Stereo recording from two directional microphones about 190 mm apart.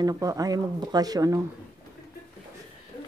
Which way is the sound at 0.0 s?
20° right (ahead or behind).